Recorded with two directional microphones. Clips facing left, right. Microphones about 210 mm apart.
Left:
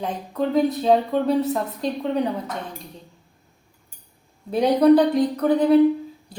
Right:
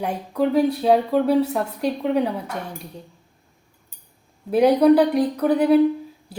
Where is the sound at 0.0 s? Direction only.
10° right (ahead or behind).